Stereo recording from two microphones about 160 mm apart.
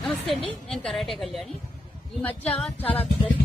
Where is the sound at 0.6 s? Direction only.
5° left (ahead or behind).